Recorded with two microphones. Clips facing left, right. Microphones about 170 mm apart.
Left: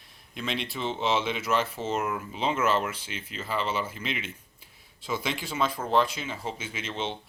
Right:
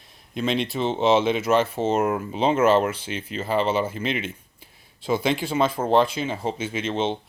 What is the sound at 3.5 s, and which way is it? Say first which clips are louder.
Speech: right 8 dB; 30° right (ahead or behind).